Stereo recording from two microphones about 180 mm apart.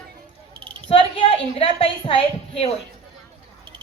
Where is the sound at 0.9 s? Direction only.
30° left (ahead or behind).